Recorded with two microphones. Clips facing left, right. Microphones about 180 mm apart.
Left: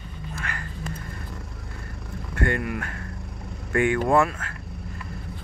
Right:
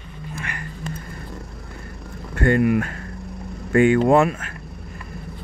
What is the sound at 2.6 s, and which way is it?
Speech, 20° right (ahead or behind).